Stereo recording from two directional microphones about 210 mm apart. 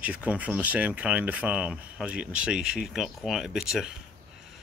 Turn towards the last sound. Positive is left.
turn(degrees=-5)  # may be behind; listen again after turning